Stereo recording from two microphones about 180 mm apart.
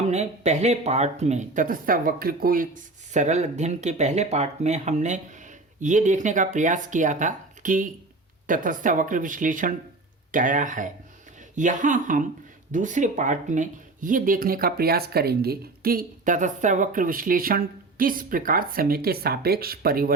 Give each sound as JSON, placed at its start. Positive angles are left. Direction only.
{"t": 0.1, "sound": "speech", "side_deg": -40}